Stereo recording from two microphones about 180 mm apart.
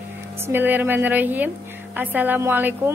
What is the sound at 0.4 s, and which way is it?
A woman's voice, 10° right (ahead or behind).